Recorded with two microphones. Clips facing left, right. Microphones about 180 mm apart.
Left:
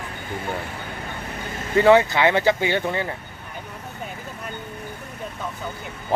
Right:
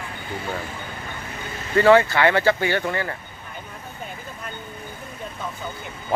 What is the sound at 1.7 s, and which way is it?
Speech, 20° left (ahead or behind).